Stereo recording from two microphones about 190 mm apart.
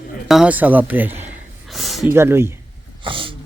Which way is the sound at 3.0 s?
25° right (ahead or behind).